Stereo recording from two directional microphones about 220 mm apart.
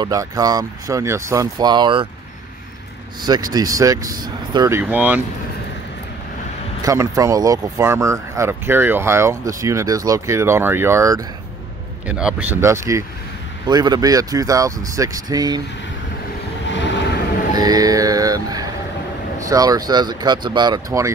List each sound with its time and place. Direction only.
0.0 s speech: 15° right (ahead or behind)
3.3 s speech: 15° right (ahead or behind)
6.8 s speech: 15° right (ahead or behind)
17.6 s music: 15° right (ahead or behind)
19.4 s speech: 15° right (ahead or behind)